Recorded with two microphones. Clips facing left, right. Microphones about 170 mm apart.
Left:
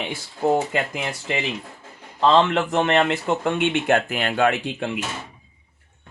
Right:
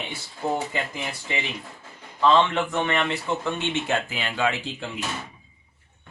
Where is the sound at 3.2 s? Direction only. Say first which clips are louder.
Left 5 dB; 60° left (ahead or behind).